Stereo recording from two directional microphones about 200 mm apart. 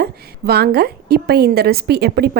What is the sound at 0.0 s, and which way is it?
A woman's voice, 50° right (ahead or behind).